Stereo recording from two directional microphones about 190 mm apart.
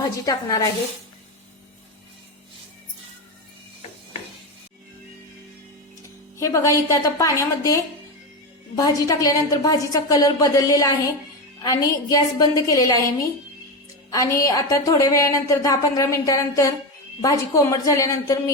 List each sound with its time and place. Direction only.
0.0 s a woman's voice: 20° left (ahead or behind)
6.4 s a woman's voice: 15° left (ahead or behind)
14.1 s speech: 15° left (ahead or behind)